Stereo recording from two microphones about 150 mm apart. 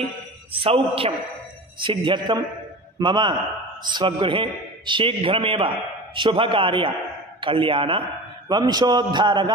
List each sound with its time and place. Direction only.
0.0 s a man's voice: 40° right (ahead or behind)